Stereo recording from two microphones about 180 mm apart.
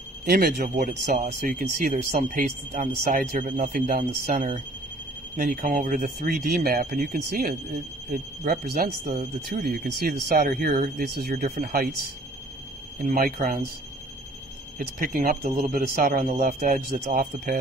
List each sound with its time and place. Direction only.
0.2 s speech: 60° right (ahead or behind)
0.7 s speech: 40° right (ahead or behind)
1.5 s speech: 55° right (ahead or behind)
13.0 s speech: 50° right (ahead or behind)
14.8 s speech: 55° right (ahead or behind)